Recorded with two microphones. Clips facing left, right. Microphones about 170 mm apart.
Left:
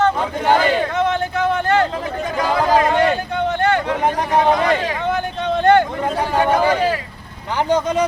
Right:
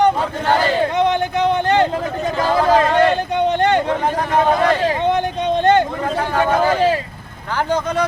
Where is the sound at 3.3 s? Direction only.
20° right (ahead or behind).